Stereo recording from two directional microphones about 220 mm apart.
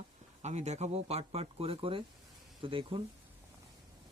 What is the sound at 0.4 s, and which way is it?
Speech, 30° right (ahead or behind).